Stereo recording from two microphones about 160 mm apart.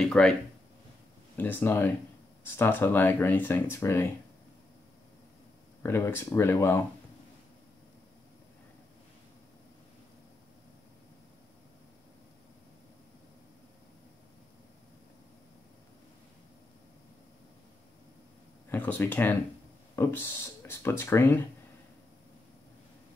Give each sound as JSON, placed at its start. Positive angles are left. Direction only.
{"t": 0.0, "sound": "speech", "side_deg": 0}
{"t": 1.3, "sound": "speech", "side_deg": 10}
{"t": 5.8, "sound": "speech", "side_deg": 15}
{"t": 18.7, "sound": "speech", "side_deg": 10}